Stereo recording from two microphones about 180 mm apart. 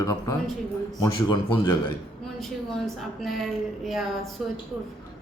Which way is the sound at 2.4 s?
Centre (ahead or behind).